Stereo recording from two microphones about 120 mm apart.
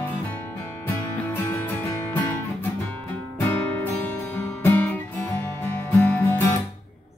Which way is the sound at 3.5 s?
15° left (ahead or behind).